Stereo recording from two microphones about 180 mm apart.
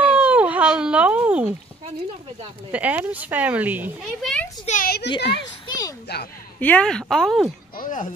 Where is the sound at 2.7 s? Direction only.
10° right (ahead or behind).